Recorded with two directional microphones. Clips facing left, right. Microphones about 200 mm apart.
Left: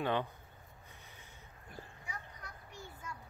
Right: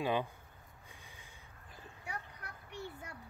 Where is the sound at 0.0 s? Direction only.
10° right (ahead or behind).